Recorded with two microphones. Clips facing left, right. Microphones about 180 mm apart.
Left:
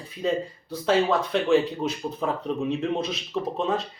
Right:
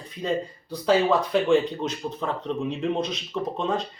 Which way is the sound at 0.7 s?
Centre (ahead or behind).